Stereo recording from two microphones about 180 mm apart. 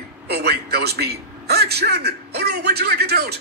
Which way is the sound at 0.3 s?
60° right (ahead or behind).